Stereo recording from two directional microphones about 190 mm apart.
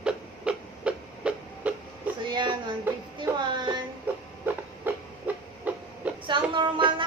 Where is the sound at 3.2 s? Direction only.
25° right (ahead or behind).